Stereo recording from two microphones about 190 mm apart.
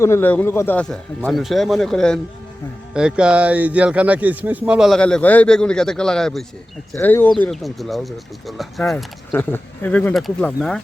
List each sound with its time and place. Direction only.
0.0 s speech: 15° left (ahead or behind)
7.4 s speech: centre (ahead or behind)